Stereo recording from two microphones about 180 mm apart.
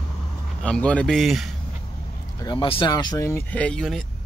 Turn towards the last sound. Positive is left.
turn(degrees=5)  # may be behind; listen again after turning